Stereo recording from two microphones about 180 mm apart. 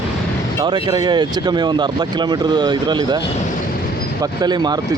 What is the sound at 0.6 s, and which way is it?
Speech, 25° right (ahead or behind).